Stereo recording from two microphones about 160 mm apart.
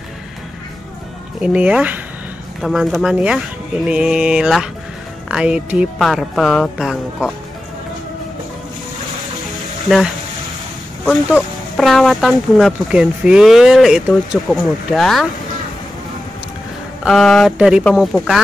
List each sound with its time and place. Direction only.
1.4 s speech: 5° right (ahead or behind)
11.7 s speech: centre (ahead or behind)
17.0 s speech: centre (ahead or behind)